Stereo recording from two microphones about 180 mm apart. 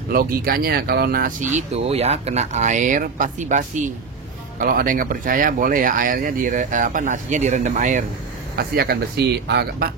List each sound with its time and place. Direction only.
0.1 s speech: 55° right (ahead or behind)
8.5 s speech: 60° right (ahead or behind)